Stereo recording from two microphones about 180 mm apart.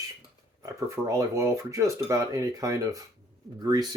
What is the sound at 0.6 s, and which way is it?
Speech, 15° right (ahead or behind).